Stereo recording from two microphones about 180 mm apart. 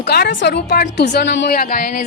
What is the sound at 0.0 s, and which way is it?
A woman's voice, 70° left (ahead or behind).